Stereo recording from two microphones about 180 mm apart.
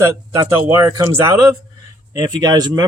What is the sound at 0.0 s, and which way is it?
Speech, 15° right (ahead or behind).